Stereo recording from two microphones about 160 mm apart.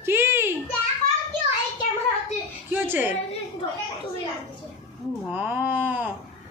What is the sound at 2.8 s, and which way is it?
Speech, 10° right (ahead or behind).